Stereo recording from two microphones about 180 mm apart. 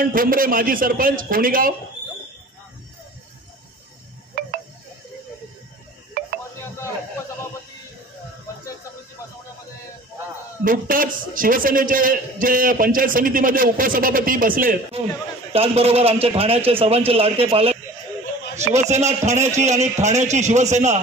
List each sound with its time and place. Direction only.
0.0 s a man's voice: 50° right (ahead or behind)
6.2 s music: 55° right (ahead or behind)
10.6 s a man's voice: 50° right (ahead or behind)
15.5 s speech: 35° right (ahead or behind)